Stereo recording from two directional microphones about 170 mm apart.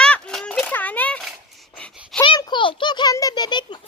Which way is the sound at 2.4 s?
25° left (ahead or behind).